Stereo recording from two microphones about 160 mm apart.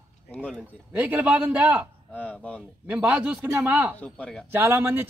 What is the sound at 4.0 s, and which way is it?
Speech, 5° left (ahead or behind).